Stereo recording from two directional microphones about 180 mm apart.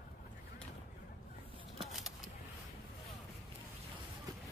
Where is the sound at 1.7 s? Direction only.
Centre (ahead or behind).